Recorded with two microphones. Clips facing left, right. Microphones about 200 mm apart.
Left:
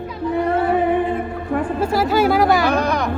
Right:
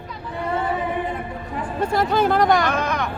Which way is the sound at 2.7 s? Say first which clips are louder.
Left 5 dB; 35° left (ahead or behind).